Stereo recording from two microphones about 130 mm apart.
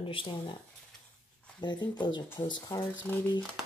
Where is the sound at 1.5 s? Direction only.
35° left (ahead or behind).